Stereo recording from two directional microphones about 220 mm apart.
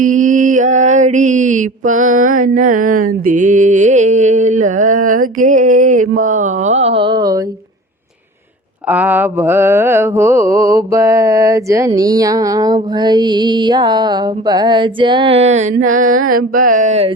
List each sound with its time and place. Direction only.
0.0 s mantra: 35° right (ahead or behind); by 7.4 s 20° right (ahead or behind)
8.9 s mantra: 5° right (ahead or behind)
11.9 s music: 15° right (ahead or behind); by 17.1 s 35° right (ahead or behind)